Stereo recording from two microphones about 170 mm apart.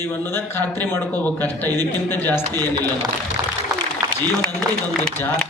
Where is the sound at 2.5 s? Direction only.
25° right (ahead or behind).